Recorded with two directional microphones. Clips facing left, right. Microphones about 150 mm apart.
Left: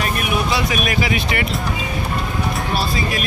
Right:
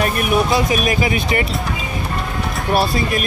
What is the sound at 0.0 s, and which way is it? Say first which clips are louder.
Speech: right 4 dB; 45° right (ahead or behind).